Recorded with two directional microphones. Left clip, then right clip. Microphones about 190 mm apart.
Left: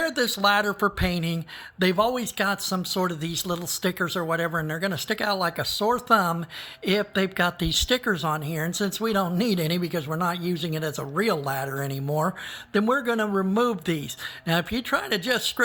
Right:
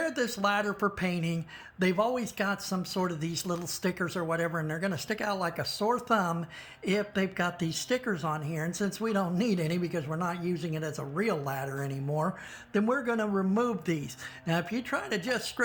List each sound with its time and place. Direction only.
0.0 s speech: 20° left (ahead or behind)